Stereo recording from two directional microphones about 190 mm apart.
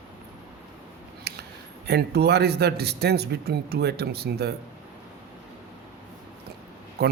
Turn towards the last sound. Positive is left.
turn(degrees=-55)  # may be behind; listen again after turning